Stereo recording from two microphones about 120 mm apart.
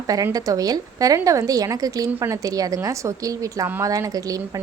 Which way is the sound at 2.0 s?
20° right (ahead or behind).